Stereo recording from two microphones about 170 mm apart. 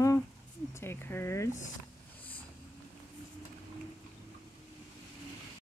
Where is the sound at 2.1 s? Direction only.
10° left (ahead or behind).